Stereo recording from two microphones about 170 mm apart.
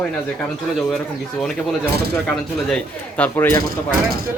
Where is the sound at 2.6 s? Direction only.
5° left (ahead or behind).